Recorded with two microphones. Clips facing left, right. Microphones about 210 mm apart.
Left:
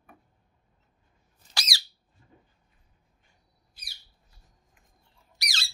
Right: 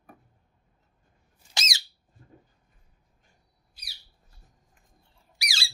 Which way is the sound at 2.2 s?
55° right (ahead or behind).